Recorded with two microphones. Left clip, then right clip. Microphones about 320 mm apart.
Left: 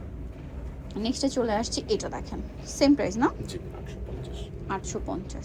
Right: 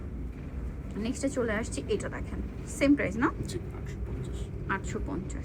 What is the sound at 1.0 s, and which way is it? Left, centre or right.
Speech, left.